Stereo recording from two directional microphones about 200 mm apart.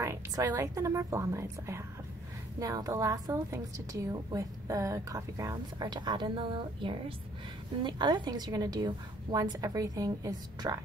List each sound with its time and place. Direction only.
0.0 s a woman's voice: 15° right (ahead or behind)